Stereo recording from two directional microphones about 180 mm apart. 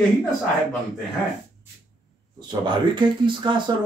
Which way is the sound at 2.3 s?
25° right (ahead or behind).